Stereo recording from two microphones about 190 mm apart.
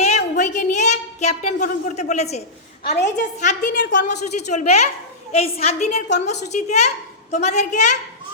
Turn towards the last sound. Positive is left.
turn(degrees=40)  # may be behind; listen again after turning